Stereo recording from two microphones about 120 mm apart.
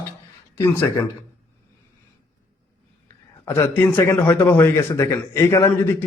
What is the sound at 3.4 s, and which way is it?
A man's voice, 20° left (ahead or behind).